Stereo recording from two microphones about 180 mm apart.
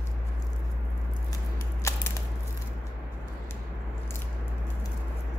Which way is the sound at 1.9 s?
15° left (ahead or behind).